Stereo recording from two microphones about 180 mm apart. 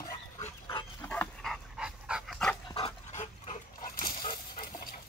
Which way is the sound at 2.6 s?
30° left (ahead or behind).